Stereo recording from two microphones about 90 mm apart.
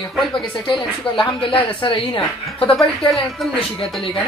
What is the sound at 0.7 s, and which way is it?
Speech, 80° left.